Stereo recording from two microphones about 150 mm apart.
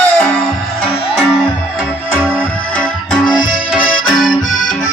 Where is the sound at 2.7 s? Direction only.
5° left (ahead or behind).